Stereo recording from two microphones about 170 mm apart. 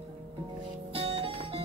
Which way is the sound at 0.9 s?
35° right (ahead or behind).